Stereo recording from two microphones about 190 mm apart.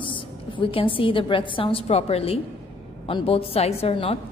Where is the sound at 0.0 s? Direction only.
25° left (ahead or behind).